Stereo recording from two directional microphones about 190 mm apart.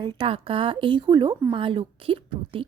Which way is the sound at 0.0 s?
25° right (ahead or behind).